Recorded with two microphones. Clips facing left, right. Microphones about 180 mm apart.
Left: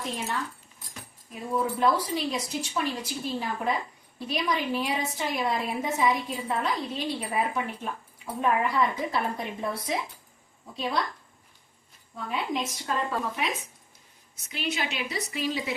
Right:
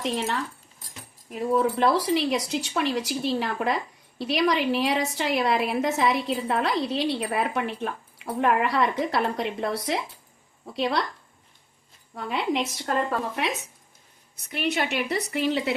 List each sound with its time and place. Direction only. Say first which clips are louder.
0.0 s speech: right 5 dB; 85° right
1.3 s a woman's voice: right 6 dB; 75° right (ahead or behind)
12.1 s a woman's voice: right 4 dB; 70° right (ahead or behind)
14.3 s a woman's voice: right 5 dB; 60° right (ahead or behind)